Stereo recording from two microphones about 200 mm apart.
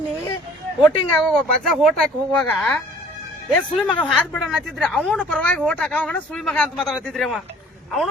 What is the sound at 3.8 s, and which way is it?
A man's voice, 5° left (ahead or behind).